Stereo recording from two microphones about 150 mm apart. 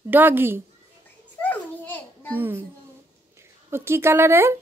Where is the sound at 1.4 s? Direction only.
10° left (ahead or behind).